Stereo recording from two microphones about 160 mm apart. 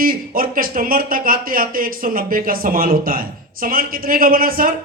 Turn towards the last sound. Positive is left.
turn(degrees=-65)  # may be behind; listen again after turning